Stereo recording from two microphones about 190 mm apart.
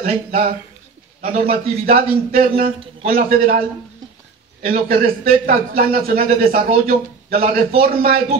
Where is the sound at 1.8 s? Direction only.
50° right (ahead or behind).